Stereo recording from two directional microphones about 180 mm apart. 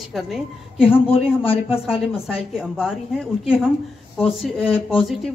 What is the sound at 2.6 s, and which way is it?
A woman's voice, 5° right (ahead or behind).